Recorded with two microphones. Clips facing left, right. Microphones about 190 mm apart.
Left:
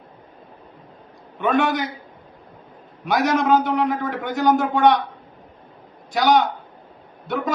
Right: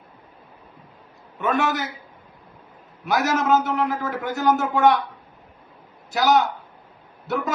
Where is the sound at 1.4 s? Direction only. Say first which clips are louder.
Left 3 dB; 5° right (ahead or behind).